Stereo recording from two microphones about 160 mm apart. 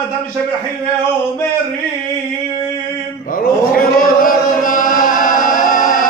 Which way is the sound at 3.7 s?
60° left (ahead or behind).